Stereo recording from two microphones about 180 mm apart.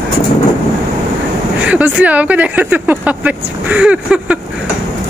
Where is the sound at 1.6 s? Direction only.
5° right (ahead or behind).